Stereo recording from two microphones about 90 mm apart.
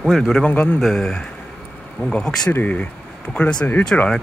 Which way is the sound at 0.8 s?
5° left (ahead or behind).